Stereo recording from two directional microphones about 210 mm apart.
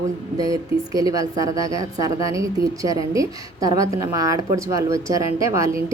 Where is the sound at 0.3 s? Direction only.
15° right (ahead or behind).